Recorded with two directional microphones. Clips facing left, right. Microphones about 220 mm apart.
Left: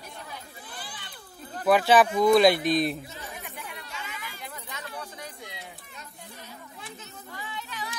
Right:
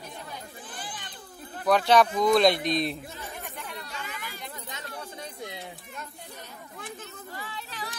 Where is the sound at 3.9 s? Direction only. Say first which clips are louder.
Right 1 dB; 40° right (ahead or behind).